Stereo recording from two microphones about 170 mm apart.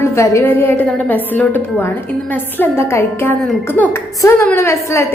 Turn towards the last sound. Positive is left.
turn(degrees=15)  # may be behind; listen again after turning